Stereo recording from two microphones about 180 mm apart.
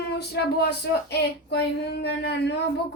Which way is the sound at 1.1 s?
65° left (ahead or behind).